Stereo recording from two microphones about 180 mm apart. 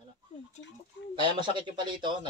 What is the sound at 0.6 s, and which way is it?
Speech, 85° left.